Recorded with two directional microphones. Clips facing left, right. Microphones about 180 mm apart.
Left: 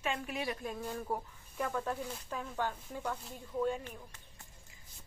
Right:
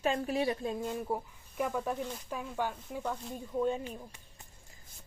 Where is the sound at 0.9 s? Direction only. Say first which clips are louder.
Right 3 dB; 10° right (ahead or behind).